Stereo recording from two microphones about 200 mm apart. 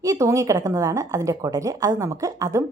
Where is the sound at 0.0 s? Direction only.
15° right (ahead or behind).